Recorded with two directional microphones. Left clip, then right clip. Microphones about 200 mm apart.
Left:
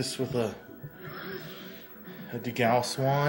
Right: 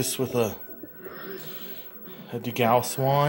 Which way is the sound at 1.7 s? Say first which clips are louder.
Right 2 dB; 35° right (ahead or behind).